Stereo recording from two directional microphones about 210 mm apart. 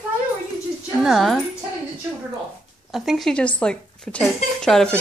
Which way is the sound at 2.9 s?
Centre (ahead or behind).